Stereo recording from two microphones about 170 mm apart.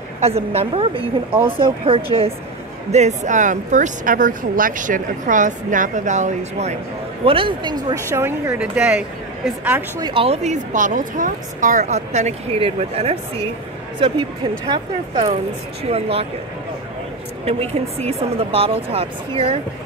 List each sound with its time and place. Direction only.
0.2 s speech: 35° right (ahead or behind)
7.2 s speech: 30° right (ahead or behind); by 10.0 s 10° right (ahead or behind)
10.0 s speech: 35° right (ahead or behind)
17.5 s speech: 35° right (ahead or behind)